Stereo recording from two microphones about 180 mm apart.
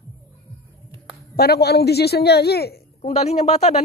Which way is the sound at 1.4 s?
65° left (ahead or behind).